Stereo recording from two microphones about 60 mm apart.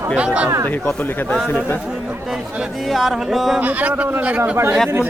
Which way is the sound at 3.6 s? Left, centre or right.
Right.